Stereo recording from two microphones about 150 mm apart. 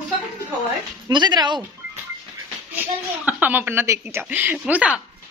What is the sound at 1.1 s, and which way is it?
Speech, 30° right (ahead or behind).